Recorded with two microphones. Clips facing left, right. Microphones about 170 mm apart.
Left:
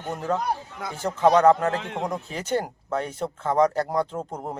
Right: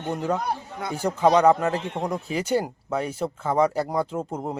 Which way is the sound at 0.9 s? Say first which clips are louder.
Even; 10° right (ahead or behind).